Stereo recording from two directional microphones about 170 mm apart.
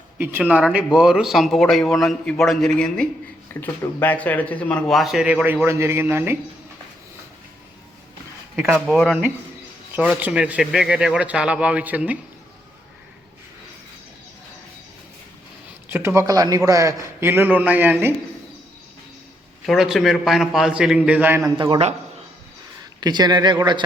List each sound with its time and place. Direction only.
0.2 s speech: 10° right (ahead or behind)
8.5 s speech: 5° right (ahead or behind)
15.9 s speech: 15° right (ahead or behind)
19.6 s speech: centre (ahead or behind)
21.6 s a man's voice: 35° right (ahead or behind)
23.0 s speech: 25° right (ahead or behind)